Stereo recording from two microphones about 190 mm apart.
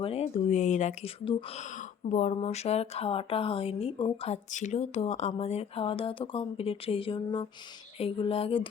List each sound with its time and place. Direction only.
0.0 s speech: 30° left (ahead or behind)
2.0 s speech: 40° left (ahead or behind)
7.9 s music: 30° left (ahead or behind)